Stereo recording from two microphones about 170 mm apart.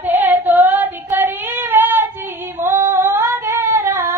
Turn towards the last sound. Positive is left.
turn(degrees=-20)  # may be behind; listen again after turning